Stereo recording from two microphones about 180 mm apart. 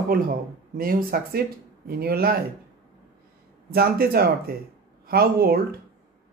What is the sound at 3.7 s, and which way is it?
Speech, 60° right (ahead or behind).